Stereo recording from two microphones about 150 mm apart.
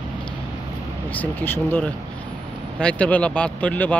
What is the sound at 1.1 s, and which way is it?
Speech, 10° left (ahead or behind).